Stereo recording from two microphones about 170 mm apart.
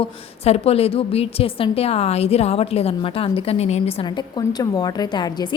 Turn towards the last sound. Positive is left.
turn(degrees=25)  # may be behind; listen again after turning